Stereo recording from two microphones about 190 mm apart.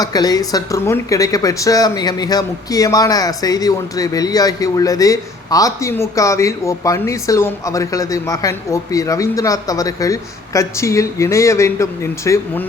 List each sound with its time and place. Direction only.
0.0 s speech: 20° left (ahead or behind)